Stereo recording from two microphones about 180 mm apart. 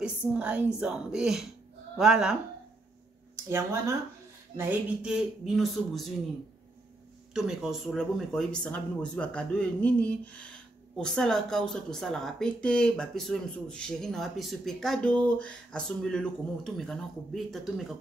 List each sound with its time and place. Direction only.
0.0 s a woman's voice: 5° right (ahead or behind)
3.4 s a woman's voice: 15° right (ahead or behind)
7.3 s speech: centre (ahead or behind)